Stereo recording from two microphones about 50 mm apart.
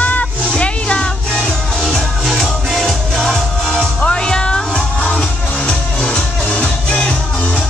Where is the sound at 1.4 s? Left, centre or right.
Centre.